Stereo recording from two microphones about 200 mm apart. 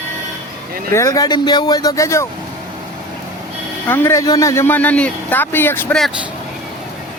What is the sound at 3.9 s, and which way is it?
Speech, 10° left (ahead or behind).